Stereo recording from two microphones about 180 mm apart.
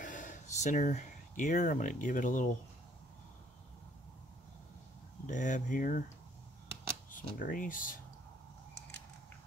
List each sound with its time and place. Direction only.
0.0 s speech: 45° left (ahead or behind)
5.2 s speech: 45° left (ahead or behind)
7.1 s speech: 50° left (ahead or behind)